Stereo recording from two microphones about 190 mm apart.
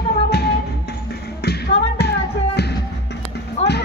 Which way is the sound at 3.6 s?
35° left (ahead or behind).